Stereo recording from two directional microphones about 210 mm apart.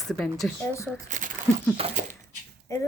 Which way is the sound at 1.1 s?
35° right (ahead or behind).